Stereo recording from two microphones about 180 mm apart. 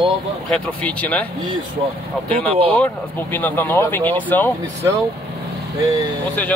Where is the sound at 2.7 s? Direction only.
10° left (ahead or behind).